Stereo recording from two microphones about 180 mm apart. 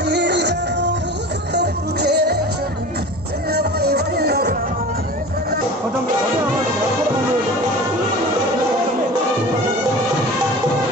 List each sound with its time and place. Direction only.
0.0 s music: 70° right (ahead or behind)
3.5 s music: 60° right (ahead or behind)